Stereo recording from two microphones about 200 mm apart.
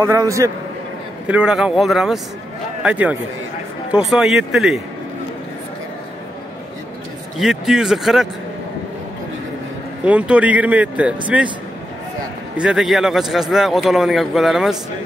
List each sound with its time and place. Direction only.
0.0 s a man's voice: 15° right (ahead or behind)
7.3 s a man's voice: centre (ahead or behind)
10.0 s speech: 5° right (ahead or behind)
12.5 s a man's voice: 5° right (ahead or behind)